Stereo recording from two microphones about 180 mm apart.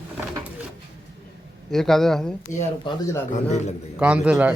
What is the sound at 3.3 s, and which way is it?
Speech, 40° left (ahead or behind).